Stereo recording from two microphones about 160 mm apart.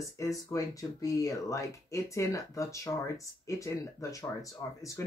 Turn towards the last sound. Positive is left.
turn(degrees=20)  # may be behind; listen again after turning